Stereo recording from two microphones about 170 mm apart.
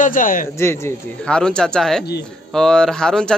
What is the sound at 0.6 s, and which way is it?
Speech, 15° left (ahead or behind).